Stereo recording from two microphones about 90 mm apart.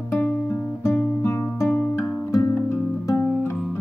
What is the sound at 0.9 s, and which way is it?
Music, 30° left (ahead or behind).